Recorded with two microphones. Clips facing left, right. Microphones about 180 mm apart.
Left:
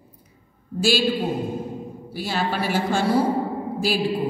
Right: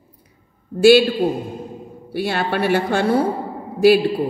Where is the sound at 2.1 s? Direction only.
60° right (ahead or behind).